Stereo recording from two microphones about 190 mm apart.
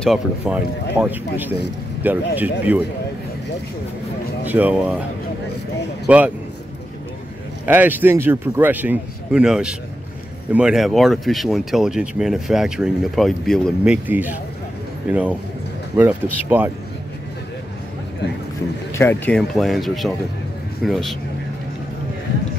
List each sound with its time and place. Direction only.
0.0 s speech: 5° right (ahead or behind)
4.5 s speech: 10° right (ahead or behind)
6.0 s speech: 5° right (ahead or behind)
7.6 s speech: 10° right (ahead or behind)
14.0 s speech: 10° right (ahead or behind)
18.9 s speech: 15° left (ahead or behind)